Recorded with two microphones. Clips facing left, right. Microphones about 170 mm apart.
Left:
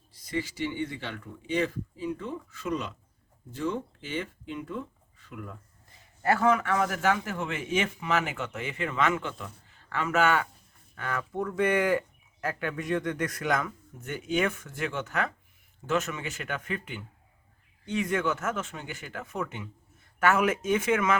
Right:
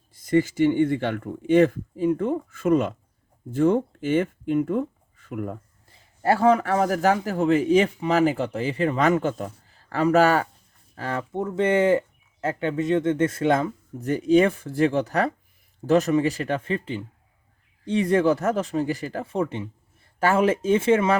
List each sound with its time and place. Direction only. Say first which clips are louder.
0.1 s speech: right 12 dB; 50° right (ahead or behind)
6.2 s a man's voice: right 5 dB; 30° right (ahead or behind)